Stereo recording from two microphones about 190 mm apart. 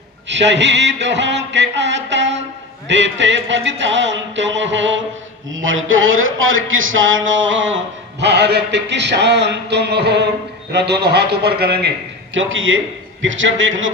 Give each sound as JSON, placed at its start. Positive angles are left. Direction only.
{"t": 0.3, "sound": "speech", "side_deg": -70}
{"t": 5.5, "sound": "speech", "side_deg": -90}
{"t": 8.2, "sound": "a man's voice", "side_deg": -60}
{"t": 12.3, "sound": "a man's voice", "side_deg": -90}